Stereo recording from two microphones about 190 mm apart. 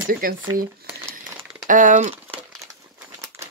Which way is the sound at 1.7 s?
45° right (ahead or behind).